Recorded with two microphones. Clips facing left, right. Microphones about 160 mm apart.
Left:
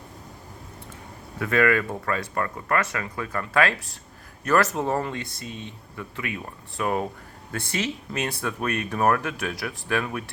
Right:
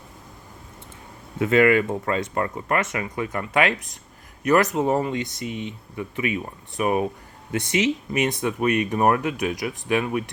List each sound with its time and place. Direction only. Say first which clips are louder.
1.4 s speech: right 4 dB; 20° right (ahead or behind)